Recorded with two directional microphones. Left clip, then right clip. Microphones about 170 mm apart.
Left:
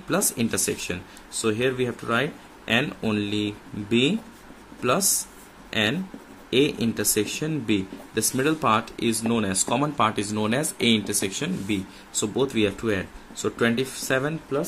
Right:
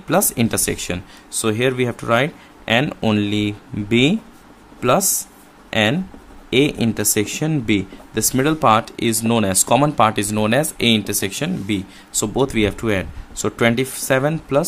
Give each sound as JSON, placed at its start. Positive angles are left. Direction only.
{"t": 0.1, "sound": "speech", "side_deg": -40}